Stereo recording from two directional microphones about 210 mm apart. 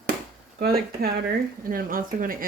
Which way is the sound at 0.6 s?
45° right (ahead or behind).